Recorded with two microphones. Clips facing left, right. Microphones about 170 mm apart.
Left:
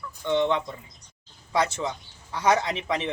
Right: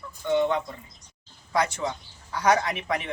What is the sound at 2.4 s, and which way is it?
Speech, 20° left (ahead or behind).